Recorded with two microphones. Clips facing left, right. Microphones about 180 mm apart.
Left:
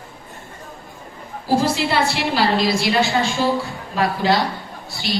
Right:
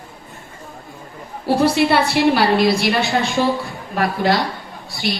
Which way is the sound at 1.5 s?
65° right (ahead or behind).